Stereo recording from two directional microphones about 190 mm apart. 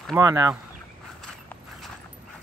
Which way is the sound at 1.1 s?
5° left (ahead or behind).